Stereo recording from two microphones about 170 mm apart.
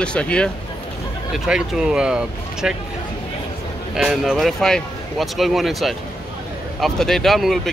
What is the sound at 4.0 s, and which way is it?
Speech, centre (ahead or behind).